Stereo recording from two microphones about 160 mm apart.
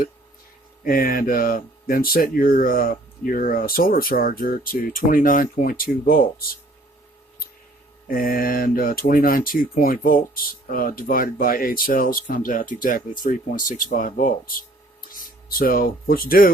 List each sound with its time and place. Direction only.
0.9 s speech: 60° left (ahead or behind)
8.0 s speech: 65° left (ahead or behind)